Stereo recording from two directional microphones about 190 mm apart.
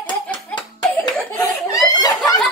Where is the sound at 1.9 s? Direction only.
20° left (ahead or behind).